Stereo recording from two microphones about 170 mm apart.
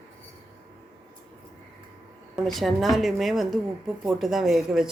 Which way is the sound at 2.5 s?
Centre (ahead or behind).